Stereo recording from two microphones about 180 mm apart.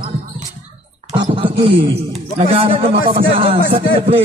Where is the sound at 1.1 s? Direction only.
25° right (ahead or behind).